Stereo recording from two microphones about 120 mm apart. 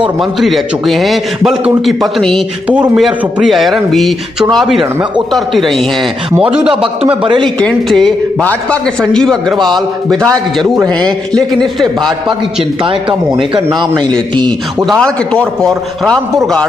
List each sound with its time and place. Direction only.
0.0 s a man's voice: centre (ahead or behind)
2.7 s a man's voice: 10° right (ahead or behind)
6.4 s a man's voice: 10° right (ahead or behind)
6.7 s a man's voice: 50° right (ahead or behind)
7.4 s a man's voice: 5° left (ahead or behind)
11.6 s a man's voice: 5° left (ahead or behind)
13.7 s a man's voice: 35° right (ahead or behind)
14.9 s a man's voice: 5° left (ahead or behind)